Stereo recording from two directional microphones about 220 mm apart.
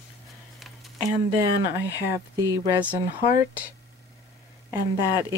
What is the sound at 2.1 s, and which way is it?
Speech, 15° right (ahead or behind).